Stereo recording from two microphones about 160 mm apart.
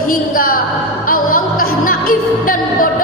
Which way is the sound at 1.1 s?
60° left (ahead or behind).